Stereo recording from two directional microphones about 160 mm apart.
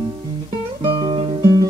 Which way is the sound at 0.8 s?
30° right (ahead or behind).